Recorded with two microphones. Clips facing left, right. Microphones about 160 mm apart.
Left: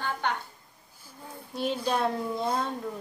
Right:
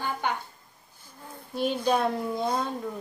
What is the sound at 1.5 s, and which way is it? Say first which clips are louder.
A child's voice: right 3 dB; centre (ahead or behind).